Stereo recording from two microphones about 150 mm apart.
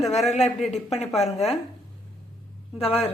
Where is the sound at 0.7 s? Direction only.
45° left (ahead or behind).